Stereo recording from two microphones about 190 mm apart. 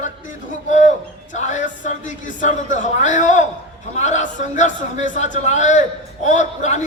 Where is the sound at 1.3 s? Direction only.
40° left (ahead or behind).